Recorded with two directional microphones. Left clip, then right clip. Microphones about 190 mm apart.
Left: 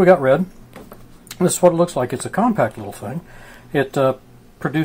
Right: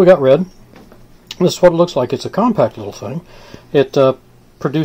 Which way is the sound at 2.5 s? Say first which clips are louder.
Right 4 dB; 40° right (ahead or behind).